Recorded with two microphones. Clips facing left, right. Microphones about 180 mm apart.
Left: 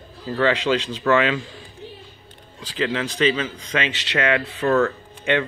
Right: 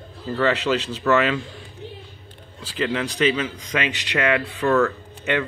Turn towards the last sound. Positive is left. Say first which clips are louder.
# even
turn(degrees=5)  # may be behind; listen again after turning